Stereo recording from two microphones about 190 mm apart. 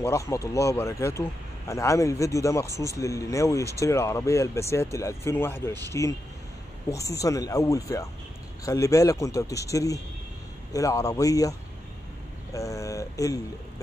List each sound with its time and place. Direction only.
0.0 s speech: 15° left (ahead or behind)
12.5 s speech: 15° left (ahead or behind)